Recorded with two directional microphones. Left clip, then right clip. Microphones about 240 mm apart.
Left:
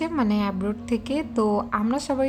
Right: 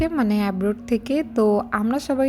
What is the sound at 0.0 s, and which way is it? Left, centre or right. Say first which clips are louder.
A woman's voice: right 3 dB; centre.